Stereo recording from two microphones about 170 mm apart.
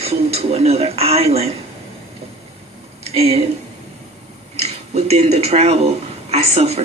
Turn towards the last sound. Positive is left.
turn(degrees=-40)  # may be behind; listen again after turning